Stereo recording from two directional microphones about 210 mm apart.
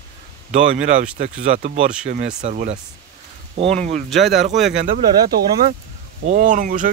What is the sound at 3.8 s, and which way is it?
Speech, 35° right (ahead or behind).